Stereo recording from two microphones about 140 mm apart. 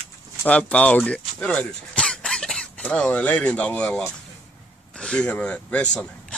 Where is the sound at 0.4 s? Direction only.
10° left (ahead or behind).